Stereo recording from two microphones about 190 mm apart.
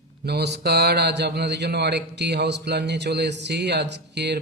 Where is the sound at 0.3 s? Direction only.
60° right (ahead or behind).